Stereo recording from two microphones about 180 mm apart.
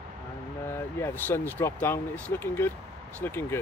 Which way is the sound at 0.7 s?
15° left (ahead or behind).